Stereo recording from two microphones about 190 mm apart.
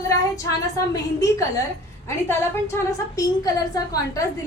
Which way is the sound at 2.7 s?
20° left (ahead or behind).